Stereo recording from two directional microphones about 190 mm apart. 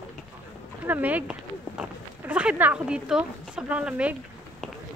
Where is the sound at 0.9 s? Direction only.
10° right (ahead or behind).